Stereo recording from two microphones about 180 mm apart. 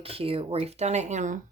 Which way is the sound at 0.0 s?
30° right (ahead or behind).